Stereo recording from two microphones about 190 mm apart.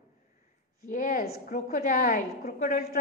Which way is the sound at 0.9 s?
45° left (ahead or behind).